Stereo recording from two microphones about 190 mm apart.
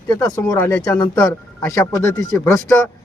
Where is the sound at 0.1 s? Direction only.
20° left (ahead or behind).